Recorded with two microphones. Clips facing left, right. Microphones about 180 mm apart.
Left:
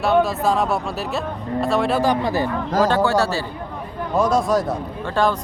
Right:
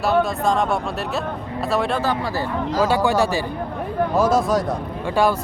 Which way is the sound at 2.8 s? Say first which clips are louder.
Even; 10° right (ahead or behind).